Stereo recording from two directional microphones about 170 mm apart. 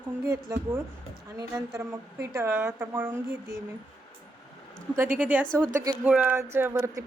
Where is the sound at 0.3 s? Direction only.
15° right (ahead or behind).